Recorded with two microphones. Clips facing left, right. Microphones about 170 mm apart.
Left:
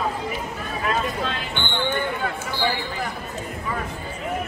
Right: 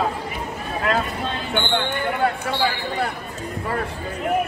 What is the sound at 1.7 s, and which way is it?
Basketball bounce, 65° right (ahead or behind).